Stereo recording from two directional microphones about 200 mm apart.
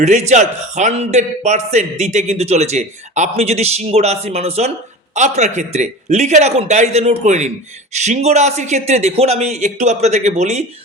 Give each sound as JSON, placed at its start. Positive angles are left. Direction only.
{"t": 0.0, "sound": "a man's voice", "side_deg": -35}